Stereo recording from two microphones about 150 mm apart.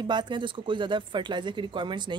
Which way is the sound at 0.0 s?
30° right (ahead or behind).